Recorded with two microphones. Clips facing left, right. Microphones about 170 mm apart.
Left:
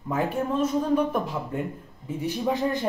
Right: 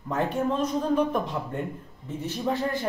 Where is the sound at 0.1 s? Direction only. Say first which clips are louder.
Even; 5° left (ahead or behind).